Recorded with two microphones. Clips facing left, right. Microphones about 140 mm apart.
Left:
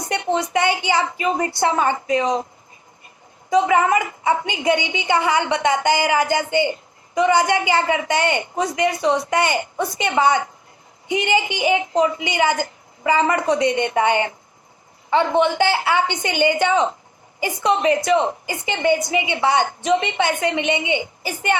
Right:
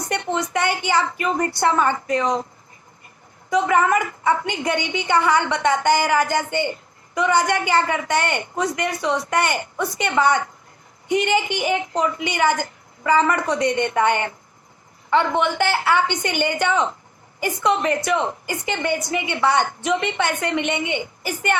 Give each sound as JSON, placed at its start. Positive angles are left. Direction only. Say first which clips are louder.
{"t": 0.1, "sound": "a woman's voice", "louder": "left 3 dB", "side_deg": 20}
{"t": 3.5, "sound": "a woman's voice", "louder": "left 2 dB", "side_deg": 20}